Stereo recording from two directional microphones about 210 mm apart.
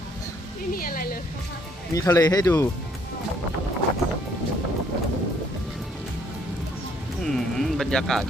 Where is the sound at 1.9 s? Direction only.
15° left (ahead or behind).